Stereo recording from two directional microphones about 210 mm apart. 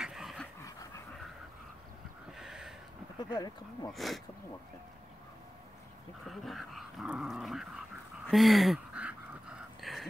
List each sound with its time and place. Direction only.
0.0 s dog: centre (ahead or behind)
2.3 s a sound: centre (ahead or behind)
3.2 s speech: 20° left (ahead or behind)
3.9 s dog: centre (ahead or behind)
6.2 s dog: centre (ahead or behind)
8.3 s duck: centre (ahead or behind)
9.8 s a sound: centre (ahead or behind)